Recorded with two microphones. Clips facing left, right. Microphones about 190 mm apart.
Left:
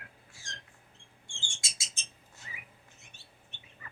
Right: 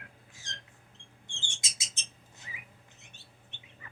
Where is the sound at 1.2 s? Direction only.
20° right (ahead or behind).